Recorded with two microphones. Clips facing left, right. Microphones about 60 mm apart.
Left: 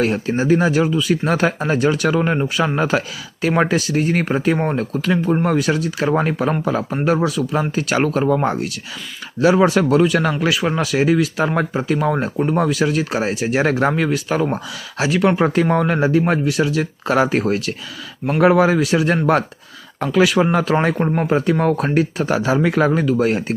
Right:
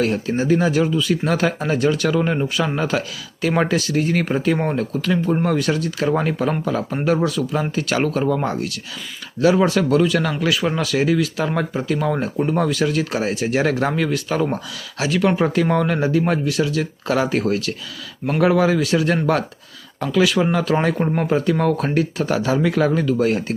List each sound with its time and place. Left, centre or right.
0.0 s speech: left
4.5 s speech: centre
10.5 s speech: centre